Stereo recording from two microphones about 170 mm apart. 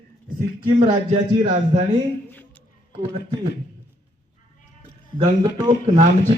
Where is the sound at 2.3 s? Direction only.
10° left (ahead or behind).